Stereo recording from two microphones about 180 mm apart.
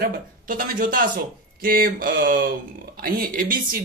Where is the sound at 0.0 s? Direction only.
50° right (ahead or behind).